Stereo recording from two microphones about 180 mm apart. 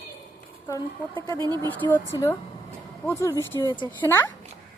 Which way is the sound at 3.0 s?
15° left (ahead or behind).